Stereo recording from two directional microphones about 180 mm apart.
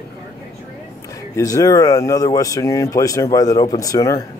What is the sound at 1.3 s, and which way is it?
Speech, 20° left (ahead or behind).